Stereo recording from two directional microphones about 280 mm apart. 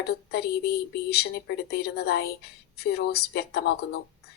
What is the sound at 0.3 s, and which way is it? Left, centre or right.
A woman's voice, left.